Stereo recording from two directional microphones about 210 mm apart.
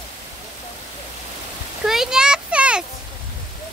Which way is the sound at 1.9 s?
Centre (ahead or behind).